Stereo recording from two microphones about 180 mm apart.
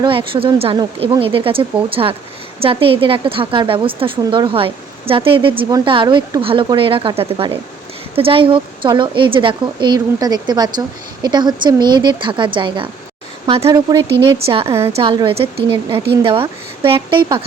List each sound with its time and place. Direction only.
0.0 s a woman's voice: 30° right (ahead or behind)
14.3 s speech: 35° right (ahead or behind)
14.7 s a woman's voice: 15° right (ahead or behind)
14.9 s a woman's voice: 30° right (ahead or behind)